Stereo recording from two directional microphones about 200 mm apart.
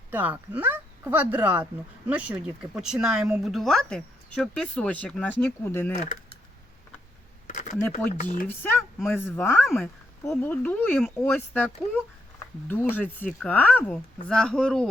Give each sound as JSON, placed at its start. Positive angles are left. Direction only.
{"t": 0.1, "sound": "speech", "side_deg": -10}
{"t": 7.4, "sound": "a sound", "side_deg": 40}
{"t": 7.8, "sound": "speech", "side_deg": 10}
{"t": 8.1, "sound": "speech", "side_deg": 40}
{"t": 9.0, "sound": "speech", "side_deg": 10}
{"t": 9.6, "sound": "speech", "side_deg": 0}